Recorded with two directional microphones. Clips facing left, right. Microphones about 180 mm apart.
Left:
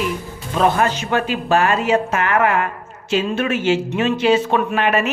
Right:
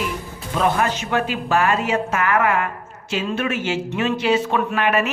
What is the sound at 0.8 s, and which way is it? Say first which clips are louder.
Speech: left 2 dB; 30° left (ahead or behind).